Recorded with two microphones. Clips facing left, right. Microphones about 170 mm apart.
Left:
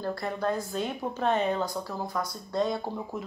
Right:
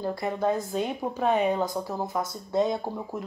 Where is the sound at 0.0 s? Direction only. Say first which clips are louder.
Right 3 dB; 20° right (ahead or behind).